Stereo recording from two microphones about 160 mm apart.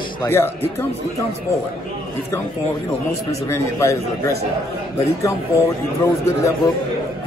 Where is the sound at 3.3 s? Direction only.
20° left (ahead or behind).